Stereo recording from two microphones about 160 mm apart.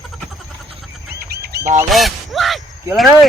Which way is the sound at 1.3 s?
75° right (ahead or behind).